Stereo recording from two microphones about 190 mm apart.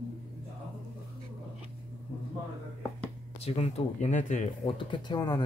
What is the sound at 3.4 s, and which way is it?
Speech, 35° left (ahead or behind).